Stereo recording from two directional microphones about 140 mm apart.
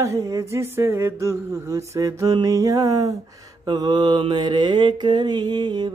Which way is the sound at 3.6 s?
30° right (ahead or behind).